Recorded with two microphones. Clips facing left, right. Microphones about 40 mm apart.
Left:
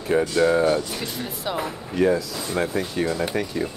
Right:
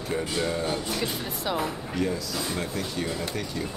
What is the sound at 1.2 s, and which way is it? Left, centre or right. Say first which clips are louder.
Speech: left 1 dB; centre.